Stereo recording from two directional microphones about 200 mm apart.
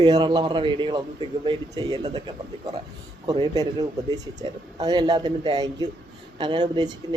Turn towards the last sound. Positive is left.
turn(degrees=-20)  # may be behind; listen again after turning